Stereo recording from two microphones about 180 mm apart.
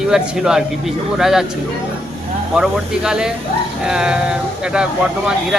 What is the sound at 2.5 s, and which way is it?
Speech, 5° right (ahead or behind).